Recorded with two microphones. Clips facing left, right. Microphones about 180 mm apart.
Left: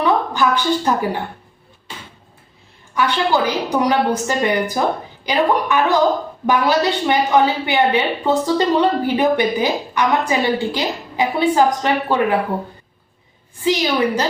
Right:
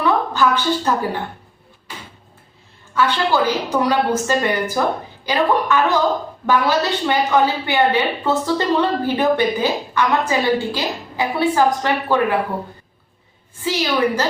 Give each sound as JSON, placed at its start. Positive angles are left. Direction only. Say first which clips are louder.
{"t": 0.0, "sound": "a woman's voice", "louder": "even", "side_deg": 15}
{"t": 2.9, "sound": "a woman's voice", "louder": "even", "side_deg": 15}
{"t": 13.7, "sound": "a woman's voice", "louder": "left 1 dB", "side_deg": 15}